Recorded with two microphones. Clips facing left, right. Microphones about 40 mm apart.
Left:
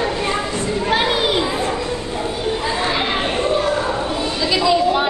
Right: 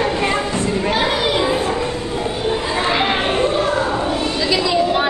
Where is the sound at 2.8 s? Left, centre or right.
Right.